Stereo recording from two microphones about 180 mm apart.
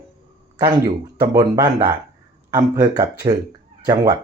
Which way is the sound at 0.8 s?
20° right (ahead or behind).